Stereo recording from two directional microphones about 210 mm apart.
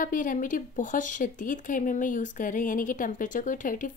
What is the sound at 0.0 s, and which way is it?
A woman's voice, 40° left (ahead or behind).